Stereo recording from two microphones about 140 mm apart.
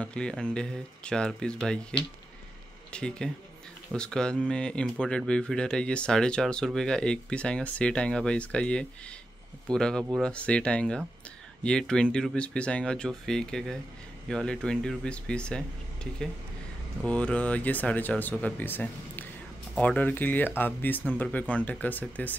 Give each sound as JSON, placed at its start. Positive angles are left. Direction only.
{"t": 0.0, "sound": "speech", "side_deg": 5}